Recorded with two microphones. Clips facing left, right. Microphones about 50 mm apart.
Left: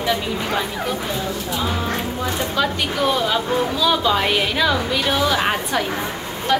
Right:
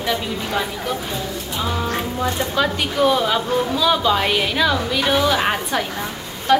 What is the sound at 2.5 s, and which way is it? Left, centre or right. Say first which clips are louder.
A woman's voice: right 2 dB; centre.